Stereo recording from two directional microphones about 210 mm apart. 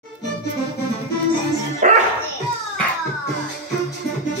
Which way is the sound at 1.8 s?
35° right (ahead or behind).